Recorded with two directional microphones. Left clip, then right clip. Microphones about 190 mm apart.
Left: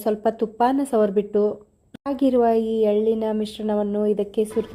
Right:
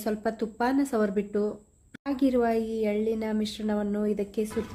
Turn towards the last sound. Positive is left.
turn(degrees=25)  # may be behind; listen again after turning